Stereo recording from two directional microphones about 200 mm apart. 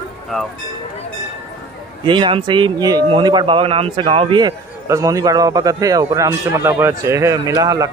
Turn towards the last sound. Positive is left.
turn(degrees=-20)  # may be behind; listen again after turning